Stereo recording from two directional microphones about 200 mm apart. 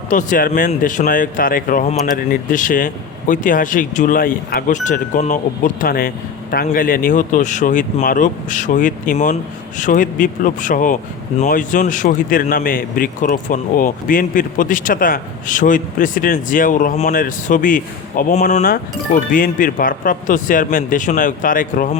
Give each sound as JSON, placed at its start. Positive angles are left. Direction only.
{"t": 0.1, "sound": "speech", "side_deg": 40}